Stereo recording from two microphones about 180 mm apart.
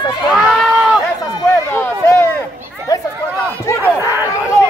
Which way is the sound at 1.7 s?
15° left (ahead or behind).